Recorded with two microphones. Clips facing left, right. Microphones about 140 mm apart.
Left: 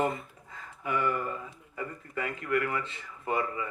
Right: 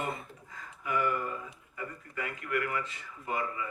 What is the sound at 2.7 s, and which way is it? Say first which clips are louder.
Speech: left 2 dB; 30° left (ahead or behind).